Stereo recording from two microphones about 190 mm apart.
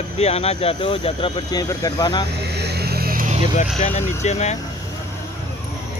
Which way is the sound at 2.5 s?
60° right (ahead or behind).